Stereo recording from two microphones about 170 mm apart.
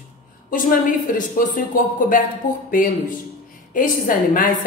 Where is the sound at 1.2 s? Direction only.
55° left (ahead or behind).